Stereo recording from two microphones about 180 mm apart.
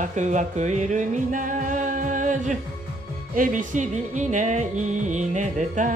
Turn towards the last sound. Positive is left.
turn(degrees=-45)  # may be behind; listen again after turning